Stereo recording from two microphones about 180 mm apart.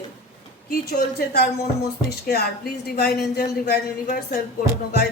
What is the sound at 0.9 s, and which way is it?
Speech, 60° left (ahead or behind).